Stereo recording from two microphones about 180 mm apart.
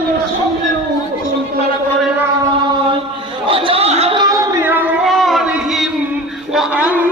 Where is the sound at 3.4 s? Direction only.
30° right (ahead or behind).